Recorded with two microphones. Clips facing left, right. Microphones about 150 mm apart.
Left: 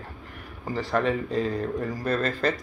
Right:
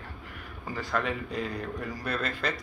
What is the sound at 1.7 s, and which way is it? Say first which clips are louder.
Speech: left 6 dB; 45° left (ahead or behind).